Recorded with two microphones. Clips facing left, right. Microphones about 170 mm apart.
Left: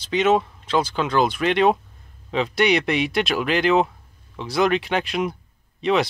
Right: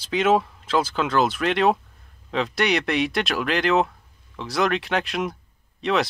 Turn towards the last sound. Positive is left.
turn(degrees=0)  # may be behind; listen again after turning